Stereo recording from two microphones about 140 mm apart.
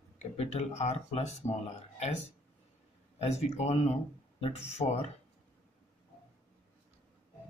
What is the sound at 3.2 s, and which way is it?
Speech, 50° left (ahead or behind).